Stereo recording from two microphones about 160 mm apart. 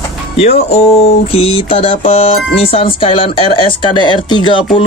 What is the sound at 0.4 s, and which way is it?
Speech, 40° left (ahead or behind).